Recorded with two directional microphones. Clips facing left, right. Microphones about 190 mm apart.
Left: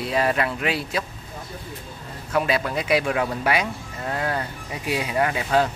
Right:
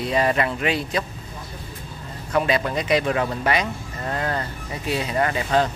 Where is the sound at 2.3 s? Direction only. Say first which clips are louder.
Right 1 dB; 5° left (ahead or behind).